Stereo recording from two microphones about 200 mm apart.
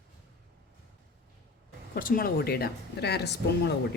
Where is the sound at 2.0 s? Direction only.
45° left (ahead or behind).